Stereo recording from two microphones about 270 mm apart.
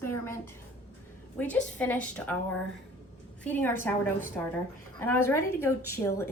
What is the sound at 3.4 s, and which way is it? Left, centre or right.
A woman's voice, centre.